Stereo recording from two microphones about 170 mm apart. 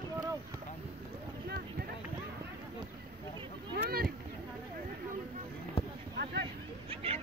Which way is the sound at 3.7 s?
65° right (ahead or behind).